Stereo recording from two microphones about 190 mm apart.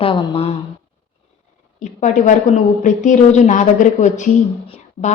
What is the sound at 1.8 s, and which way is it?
A woman's voice, 40° left (ahead or behind).